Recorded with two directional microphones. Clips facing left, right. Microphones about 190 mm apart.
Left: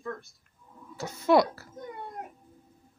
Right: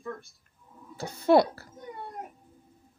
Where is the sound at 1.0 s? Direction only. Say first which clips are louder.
Right 1 dB; 30° right (ahead or behind).